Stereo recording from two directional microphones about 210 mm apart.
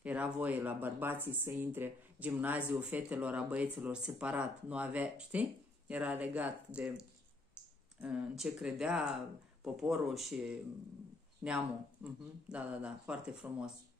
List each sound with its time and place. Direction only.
0.0 s speech: 5° right (ahead or behind)
11.4 s speech: 5° right (ahead or behind)